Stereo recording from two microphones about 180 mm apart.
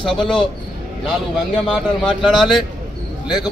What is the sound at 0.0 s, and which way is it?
Speech, 5° left (ahead or behind).